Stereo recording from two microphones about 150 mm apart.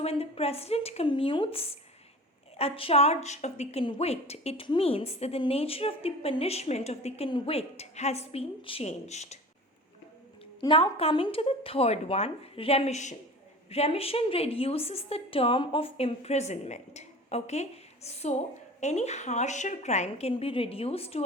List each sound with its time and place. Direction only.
0.0 s a woman's voice: 40° left (ahead or behind)
10.6 s a woman's voice: 35° left (ahead or behind)